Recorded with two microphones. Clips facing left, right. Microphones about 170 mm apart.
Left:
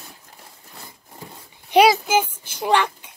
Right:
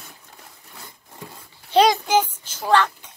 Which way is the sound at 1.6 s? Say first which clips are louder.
Left 2 dB; 10° left (ahead or behind).